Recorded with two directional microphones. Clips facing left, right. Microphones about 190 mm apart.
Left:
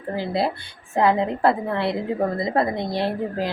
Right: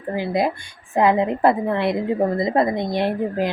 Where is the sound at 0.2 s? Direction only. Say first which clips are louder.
Right 3 dB; 15° right (ahead or behind).